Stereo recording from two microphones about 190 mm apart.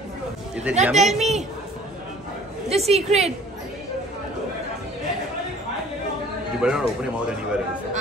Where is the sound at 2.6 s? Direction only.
35° right (ahead or behind).